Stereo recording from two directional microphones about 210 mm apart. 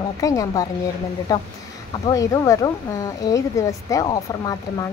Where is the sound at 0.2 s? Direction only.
15° left (ahead or behind).